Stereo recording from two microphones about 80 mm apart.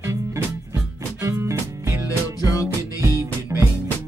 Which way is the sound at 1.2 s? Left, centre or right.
Right.